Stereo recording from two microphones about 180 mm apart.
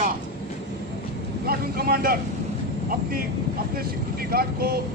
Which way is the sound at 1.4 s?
55° right (ahead or behind).